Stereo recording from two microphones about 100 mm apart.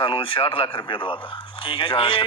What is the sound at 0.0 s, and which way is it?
A man's voice, 60° left (ahead or behind).